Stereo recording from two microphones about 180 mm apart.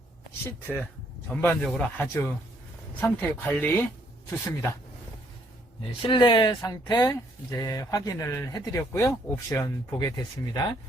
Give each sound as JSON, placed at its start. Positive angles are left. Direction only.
{"t": 1.3, "sound": "speech", "side_deg": 5}
{"t": 6.0, "sound": "speech", "side_deg": 25}